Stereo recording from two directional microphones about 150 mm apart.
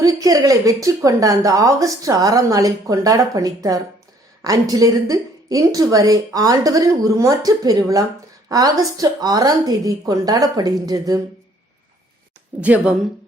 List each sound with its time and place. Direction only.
0.0 s a woman's voice: 25° right (ahead or behind)
12.5 s a woman's voice: 10° right (ahead or behind)